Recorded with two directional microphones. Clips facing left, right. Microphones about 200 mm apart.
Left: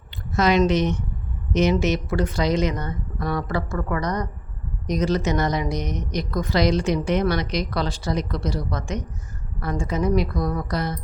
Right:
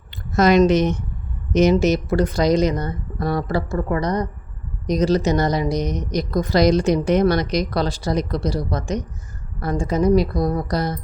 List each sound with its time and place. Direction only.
0.3 s speech: 45° right (ahead or behind)